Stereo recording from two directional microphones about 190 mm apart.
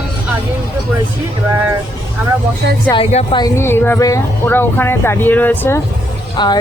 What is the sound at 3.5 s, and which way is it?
Speech, 10° left (ahead or behind).